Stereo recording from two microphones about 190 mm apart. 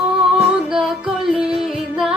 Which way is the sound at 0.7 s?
Centre (ahead or behind).